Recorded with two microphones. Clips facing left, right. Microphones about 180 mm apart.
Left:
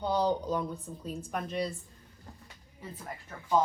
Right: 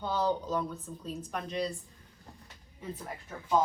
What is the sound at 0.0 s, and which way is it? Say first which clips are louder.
A woman's voice: left 2 dB; 15° left (ahead or behind).